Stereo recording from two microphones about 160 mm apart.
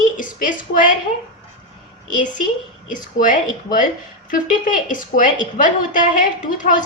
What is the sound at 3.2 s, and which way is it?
A woman's voice, 55° left (ahead or behind).